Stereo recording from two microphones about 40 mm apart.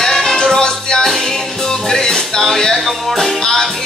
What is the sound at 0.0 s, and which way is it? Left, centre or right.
Music, centre.